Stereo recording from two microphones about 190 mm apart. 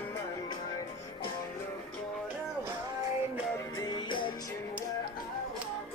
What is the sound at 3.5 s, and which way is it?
Music, 20° left (ahead or behind).